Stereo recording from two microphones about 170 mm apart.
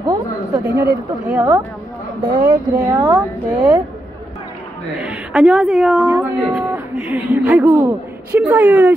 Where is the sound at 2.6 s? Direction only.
20° right (ahead or behind).